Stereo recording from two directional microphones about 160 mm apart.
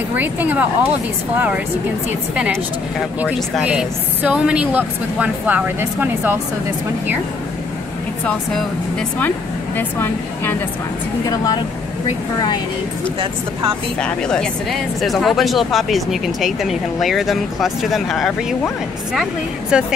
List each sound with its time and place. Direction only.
0.1 s a woman's voice: 10° right (ahead or behind)
3.2 s a woman's voice: 10° right (ahead or behind)
9.8 s speech: 15° left (ahead or behind)
14.0 s speech: 5° left (ahead or behind)
19.7 s speech: 5° right (ahead or behind)